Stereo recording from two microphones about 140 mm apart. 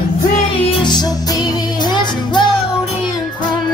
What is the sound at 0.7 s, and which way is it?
Music, 35° left (ahead or behind).